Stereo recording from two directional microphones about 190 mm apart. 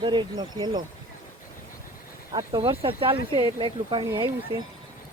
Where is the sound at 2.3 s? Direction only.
25° right (ahead or behind).